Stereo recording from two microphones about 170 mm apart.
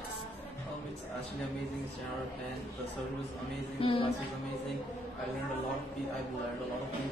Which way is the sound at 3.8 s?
30° left (ahead or behind).